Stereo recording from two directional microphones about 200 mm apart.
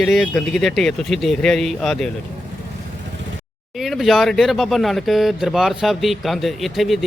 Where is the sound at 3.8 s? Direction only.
Centre (ahead or behind).